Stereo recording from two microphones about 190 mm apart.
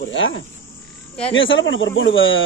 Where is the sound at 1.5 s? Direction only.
85° left.